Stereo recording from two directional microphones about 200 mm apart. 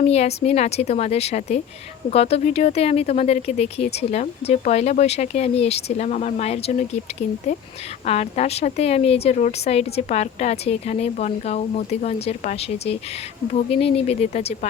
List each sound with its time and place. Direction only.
0.0 s a woman's voice: 30° left (ahead or behind)
8.0 s a woman's voice: 30° left (ahead or behind)